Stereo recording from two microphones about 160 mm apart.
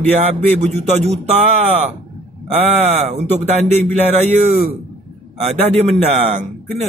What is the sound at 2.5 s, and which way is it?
A man's voice, 40° right (ahead or behind).